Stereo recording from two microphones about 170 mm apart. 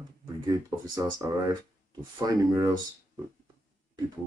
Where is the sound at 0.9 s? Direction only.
20° right (ahead or behind).